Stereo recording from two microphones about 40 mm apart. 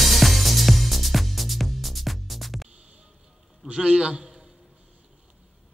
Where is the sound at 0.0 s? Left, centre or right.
Centre.